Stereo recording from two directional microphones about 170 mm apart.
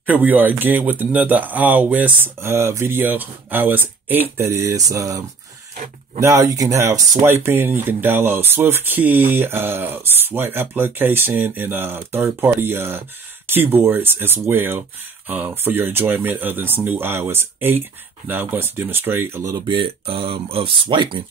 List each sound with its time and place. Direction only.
0.0 s speech: 10° right (ahead or behind)
6.2 s speech: 20° right (ahead or behind)